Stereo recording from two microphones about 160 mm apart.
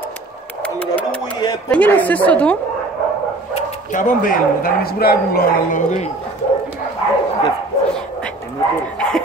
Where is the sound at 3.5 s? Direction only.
55° left (ahead or behind); by 5.8 s 75° left (ahead or behind).